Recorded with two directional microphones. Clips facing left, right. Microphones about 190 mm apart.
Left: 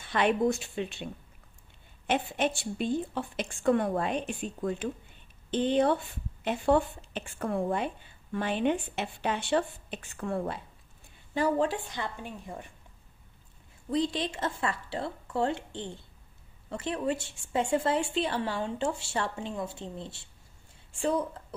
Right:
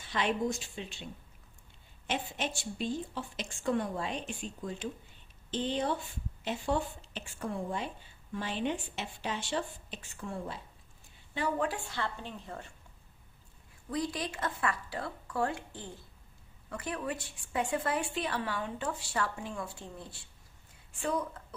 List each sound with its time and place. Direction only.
0.0 s a woman's voice: 60° left (ahead or behind)
2.0 s a woman's voice: 55° left (ahead or behind)
11.3 s a woman's voice: 40° left (ahead or behind)
11.6 s a woman's voice: 20° left (ahead or behind)
13.8 s a woman's voice: 25° left (ahead or behind)